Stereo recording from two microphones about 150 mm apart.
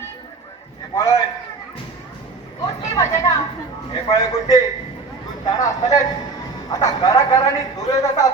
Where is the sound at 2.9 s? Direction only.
20° left (ahead or behind).